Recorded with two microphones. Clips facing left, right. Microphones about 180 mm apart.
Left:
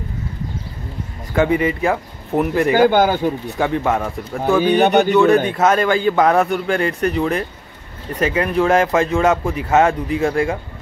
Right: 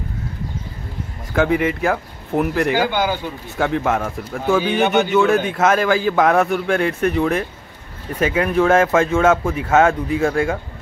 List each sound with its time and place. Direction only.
1.3 s a man's voice: centre (ahead or behind)
2.7 s a man's voice: 50° left (ahead or behind)
3.5 s a man's voice: centre (ahead or behind)
4.6 s a man's voice: 45° left (ahead or behind)
5.1 s a man's voice: centre (ahead or behind)
8.2 s a man's voice: centre (ahead or behind)